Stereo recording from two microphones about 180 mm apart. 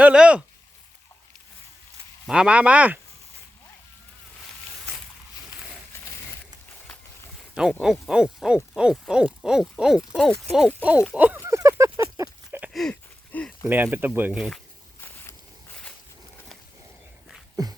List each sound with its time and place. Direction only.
0.0 s speech: 5° right (ahead or behind)
2.2 s speech: 5° right (ahead or behind)
7.5 s hoot: 5° right (ahead or behind)
11.1 s speech: 10° right (ahead or behind)
12.1 s a sound: 15° right (ahead or behind)
12.7 s a sound: 5° left (ahead or behind)
13.7 s speech: 10° right (ahead or behind)
15.0 s a sound: 10° left (ahead or behind)
17.6 s beatboxing: 20° right (ahead or behind)